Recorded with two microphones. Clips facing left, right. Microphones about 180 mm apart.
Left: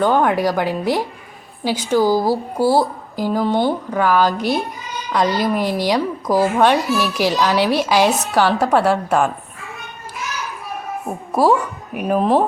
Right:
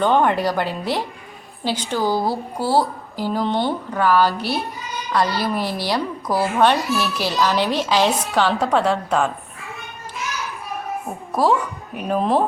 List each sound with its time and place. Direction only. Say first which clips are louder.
0.0 s speech: left 2 dB; 5° left (ahead or behind)
11.3 s a woman's voice: left 3 dB; 10° left (ahead or behind)